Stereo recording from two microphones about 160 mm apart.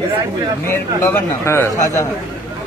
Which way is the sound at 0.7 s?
15° left (ahead or behind).